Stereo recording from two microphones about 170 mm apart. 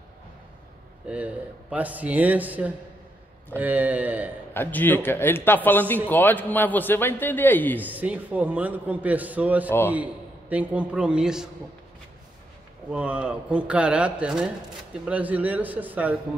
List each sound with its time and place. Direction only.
1.0 s a man's voice: 10° right (ahead or behind)
4.6 s a man's voice: 10° left (ahead or behind)
7.8 s a man's voice: 10° right (ahead or behind)
12.9 s a man's voice: 5° right (ahead or behind)